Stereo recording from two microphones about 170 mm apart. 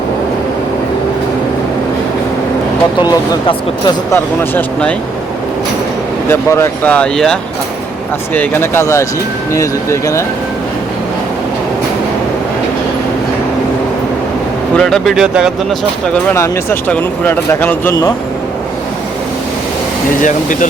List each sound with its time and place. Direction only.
3.8 s speech: 15° left (ahead or behind)
6.2 s speech: 15° left (ahead or behind)
8.4 s speech: 15° left (ahead or behind)
14.8 s speech: centre (ahead or behind)
16.3 s speech: 15° left (ahead or behind)
20.2 s speech: 50° left (ahead or behind)